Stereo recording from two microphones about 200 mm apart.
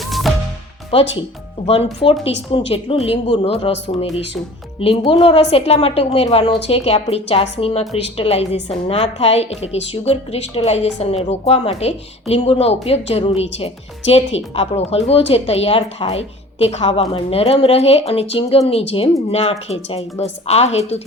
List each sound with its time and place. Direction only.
0.1 s music: centre (ahead or behind)
0.9 s a woman's voice: 30° left (ahead or behind)
4.8 s a woman's voice: 30° left (ahead or behind)